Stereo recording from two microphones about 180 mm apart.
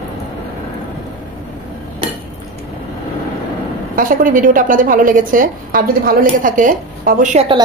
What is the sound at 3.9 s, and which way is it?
A woman's voice, 50° right (ahead or behind).